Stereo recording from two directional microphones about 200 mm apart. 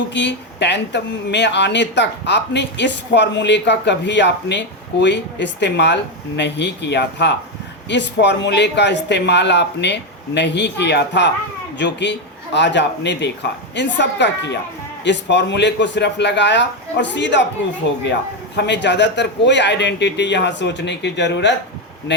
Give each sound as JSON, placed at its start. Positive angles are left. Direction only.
{"t": 0.1, "sound": "speech", "side_deg": 60}